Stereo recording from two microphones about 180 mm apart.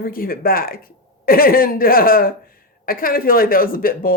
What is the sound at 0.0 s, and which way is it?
Speech, 55° left (ahead or behind).